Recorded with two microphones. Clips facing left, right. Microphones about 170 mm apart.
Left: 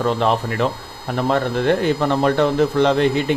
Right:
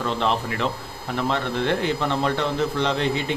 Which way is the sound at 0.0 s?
45° left (ahead or behind).